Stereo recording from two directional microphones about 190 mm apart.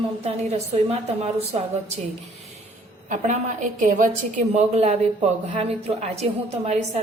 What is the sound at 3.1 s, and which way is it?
Speech, 40° right (ahead or behind).